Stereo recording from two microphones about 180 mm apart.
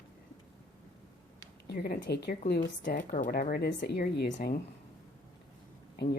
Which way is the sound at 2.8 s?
50° left (ahead or behind).